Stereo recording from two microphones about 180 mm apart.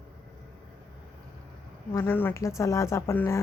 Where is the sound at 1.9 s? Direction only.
10° left (ahead or behind).